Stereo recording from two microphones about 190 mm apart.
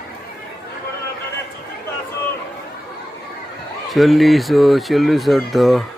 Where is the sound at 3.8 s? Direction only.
Centre (ahead or behind).